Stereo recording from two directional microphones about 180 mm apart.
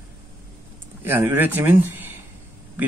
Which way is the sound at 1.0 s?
10° right (ahead or behind).